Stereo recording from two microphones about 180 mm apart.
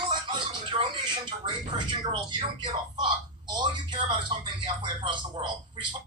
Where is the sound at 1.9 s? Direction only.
25° right (ahead or behind).